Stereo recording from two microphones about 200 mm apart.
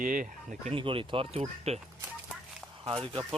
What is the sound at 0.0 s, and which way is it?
Speech, 40° right (ahead or behind).